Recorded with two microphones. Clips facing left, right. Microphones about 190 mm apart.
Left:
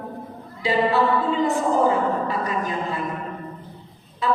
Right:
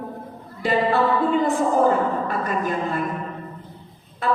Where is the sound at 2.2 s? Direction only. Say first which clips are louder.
Right 1 dB; 50° right (ahead or behind).